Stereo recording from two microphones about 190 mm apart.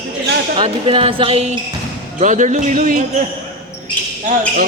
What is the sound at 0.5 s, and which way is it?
Speech, 30° right (ahead or behind).